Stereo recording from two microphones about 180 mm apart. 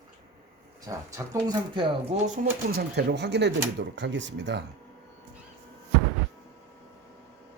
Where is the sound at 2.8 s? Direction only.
70° right (ahead or behind).